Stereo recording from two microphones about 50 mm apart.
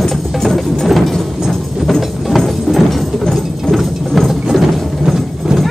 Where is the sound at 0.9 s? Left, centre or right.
Centre.